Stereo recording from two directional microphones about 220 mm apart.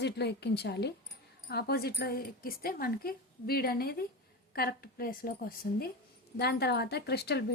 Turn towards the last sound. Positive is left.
turn(degrees=50)  # may be behind; listen again after turning